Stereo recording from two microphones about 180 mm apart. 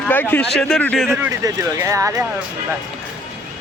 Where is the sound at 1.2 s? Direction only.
15° right (ahead or behind).